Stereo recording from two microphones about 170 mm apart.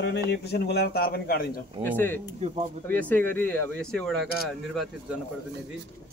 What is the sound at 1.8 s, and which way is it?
Speech, 10° left (ahead or behind).